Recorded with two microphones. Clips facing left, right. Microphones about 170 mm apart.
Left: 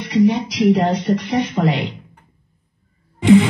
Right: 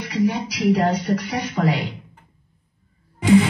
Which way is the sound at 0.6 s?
5° right (ahead or behind).